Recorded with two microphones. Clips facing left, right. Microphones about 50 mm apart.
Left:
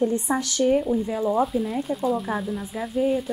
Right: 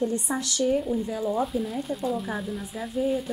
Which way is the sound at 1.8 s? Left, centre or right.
Centre.